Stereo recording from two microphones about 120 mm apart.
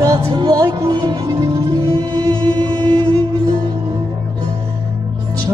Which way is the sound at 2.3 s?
40° right (ahead or behind).